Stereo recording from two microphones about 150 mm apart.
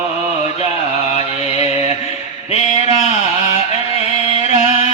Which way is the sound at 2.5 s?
50° left (ahead or behind).